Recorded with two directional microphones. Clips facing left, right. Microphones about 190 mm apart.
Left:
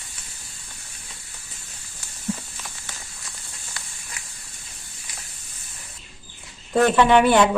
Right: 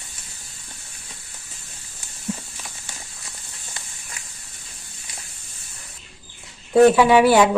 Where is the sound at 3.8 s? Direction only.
20° right (ahead or behind).